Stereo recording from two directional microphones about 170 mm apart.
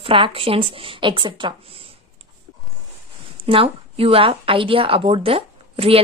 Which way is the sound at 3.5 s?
35° right (ahead or behind).